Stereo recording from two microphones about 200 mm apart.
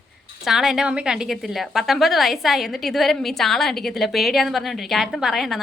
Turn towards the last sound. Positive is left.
turn(degrees=0)  # may be behind; listen again after turning